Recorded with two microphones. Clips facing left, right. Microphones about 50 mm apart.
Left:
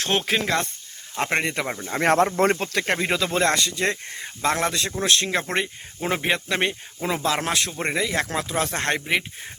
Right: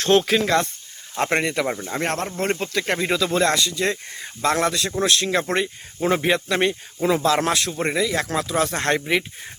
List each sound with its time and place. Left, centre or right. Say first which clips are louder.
0.1 s speech: right 6 dB; left
0.4 s speech: right 4 dB; centre
2.0 s speech: left 9 dB; left
2.9 s speech: right 2 dB; left
4.4 s speech: right 2 dB; centre
5.3 s speech: right 3 dB; centre
7.9 s speech: right 1 dB; left
8.5 s speech: right 3 dB; centre